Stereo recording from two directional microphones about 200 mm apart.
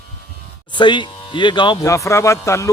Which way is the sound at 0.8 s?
25° left (ahead or behind).